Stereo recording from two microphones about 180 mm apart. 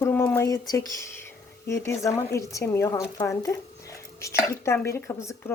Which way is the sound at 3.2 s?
15° left (ahead or behind).